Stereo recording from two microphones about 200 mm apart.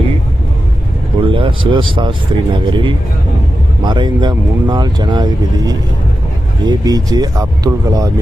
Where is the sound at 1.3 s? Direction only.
25° right (ahead or behind).